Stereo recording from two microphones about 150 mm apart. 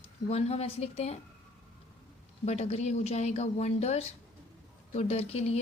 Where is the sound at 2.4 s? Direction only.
45° left (ahead or behind).